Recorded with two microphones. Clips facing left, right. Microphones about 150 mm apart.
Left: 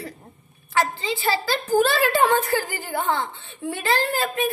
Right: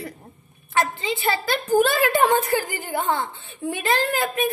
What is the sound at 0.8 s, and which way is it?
A woman's voice, 20° right (ahead or behind).